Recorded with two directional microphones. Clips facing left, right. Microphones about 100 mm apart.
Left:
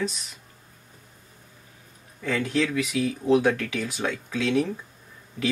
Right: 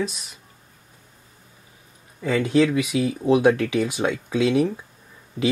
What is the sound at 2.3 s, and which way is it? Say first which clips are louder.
Speech: right 6 dB; 10° right (ahead or behind).